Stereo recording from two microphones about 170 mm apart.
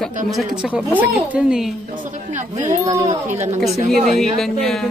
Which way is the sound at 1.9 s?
45° right (ahead or behind).